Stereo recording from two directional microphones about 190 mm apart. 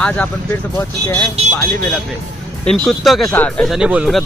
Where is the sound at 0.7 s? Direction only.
10° left (ahead or behind).